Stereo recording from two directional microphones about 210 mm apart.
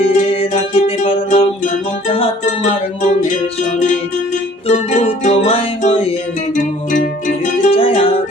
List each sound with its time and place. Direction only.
0.0 s music: 25° left (ahead or behind)
4.7 s music: 30° left (ahead or behind)
6.9 s music: 40° left (ahead or behind)